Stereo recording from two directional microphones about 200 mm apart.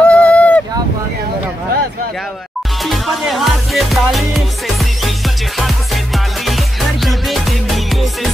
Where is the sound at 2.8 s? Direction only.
Centre (ahead or behind).